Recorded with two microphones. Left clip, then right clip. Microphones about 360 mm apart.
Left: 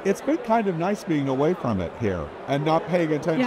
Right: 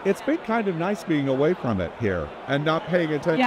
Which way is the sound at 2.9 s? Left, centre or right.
Centre.